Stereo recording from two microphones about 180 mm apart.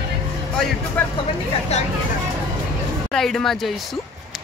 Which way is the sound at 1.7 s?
35° left (ahead or behind).